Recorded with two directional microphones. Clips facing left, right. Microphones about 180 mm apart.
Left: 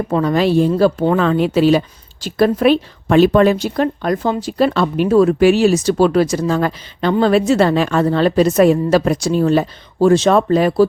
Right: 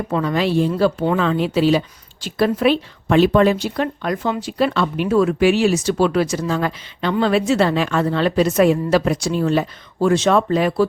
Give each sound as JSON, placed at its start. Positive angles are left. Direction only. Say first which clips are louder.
{"t": 0.1, "sound": "a woman's voice", "louder": "left 4 dB", "side_deg": 40}